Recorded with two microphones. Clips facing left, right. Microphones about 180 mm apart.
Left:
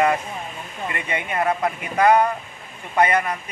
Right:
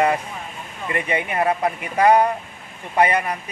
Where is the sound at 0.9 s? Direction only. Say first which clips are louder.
Right 4 dB; 25° right (ahead or behind).